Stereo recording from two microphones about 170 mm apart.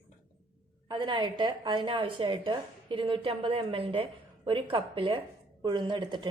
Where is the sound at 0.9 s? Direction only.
25° right (ahead or behind).